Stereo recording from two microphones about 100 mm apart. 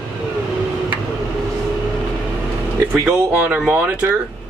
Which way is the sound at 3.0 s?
15° right (ahead or behind).